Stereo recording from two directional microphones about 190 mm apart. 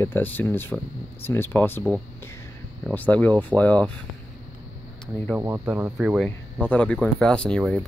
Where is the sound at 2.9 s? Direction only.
10° left (ahead or behind).